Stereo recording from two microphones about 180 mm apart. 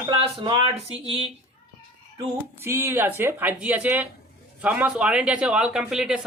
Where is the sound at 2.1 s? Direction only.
15° right (ahead or behind).